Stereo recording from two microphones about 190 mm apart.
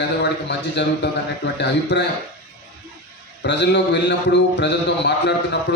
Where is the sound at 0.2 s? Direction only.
65° left (ahead or behind).